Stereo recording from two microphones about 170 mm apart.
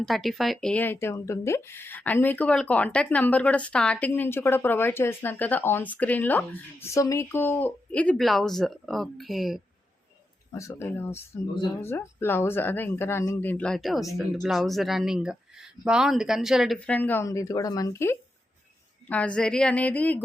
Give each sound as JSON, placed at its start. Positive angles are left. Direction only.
{"t": 0.0, "sound": "speech", "side_deg": 0}
{"t": 10.5, "sound": "speech", "side_deg": 20}
{"t": 16.7, "sound": "speech", "side_deg": 10}